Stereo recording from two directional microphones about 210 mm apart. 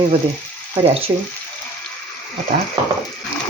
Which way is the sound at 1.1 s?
15° right (ahead or behind).